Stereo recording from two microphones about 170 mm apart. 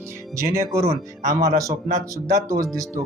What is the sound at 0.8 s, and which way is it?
Speech, 50° right (ahead or behind).